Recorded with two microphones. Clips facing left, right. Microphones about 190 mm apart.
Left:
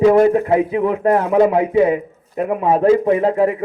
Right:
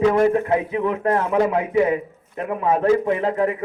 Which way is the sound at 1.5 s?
35° left (ahead or behind).